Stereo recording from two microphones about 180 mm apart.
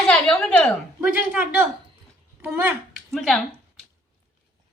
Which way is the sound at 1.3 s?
10° right (ahead or behind).